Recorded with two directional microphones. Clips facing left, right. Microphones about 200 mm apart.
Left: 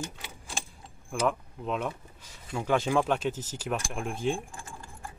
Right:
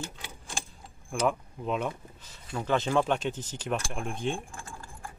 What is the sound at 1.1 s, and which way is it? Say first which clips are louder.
Speech: even; centre (ahead or behind).